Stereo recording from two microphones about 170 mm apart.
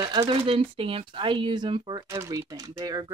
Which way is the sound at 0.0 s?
20° right (ahead or behind).